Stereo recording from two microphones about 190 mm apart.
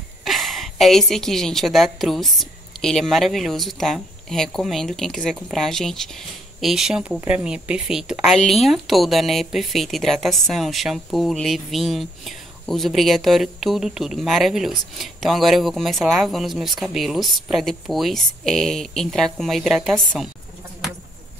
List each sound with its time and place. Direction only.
0.2 s speech: centre (ahead or behind)